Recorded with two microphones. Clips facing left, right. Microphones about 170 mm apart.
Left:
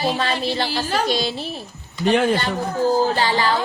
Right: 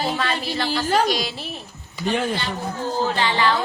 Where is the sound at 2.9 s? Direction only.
35° left (ahead or behind).